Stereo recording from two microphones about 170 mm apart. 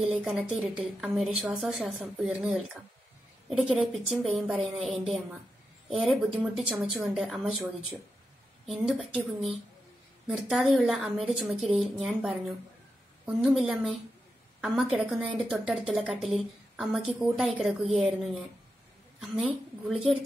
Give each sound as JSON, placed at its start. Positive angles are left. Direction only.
{"t": 0.0, "sound": "a woman's voice", "side_deg": -5}